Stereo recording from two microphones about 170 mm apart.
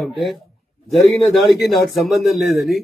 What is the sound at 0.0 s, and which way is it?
A man's voice, centre (ahead or behind).